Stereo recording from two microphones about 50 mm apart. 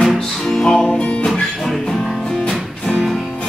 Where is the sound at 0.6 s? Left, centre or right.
Centre.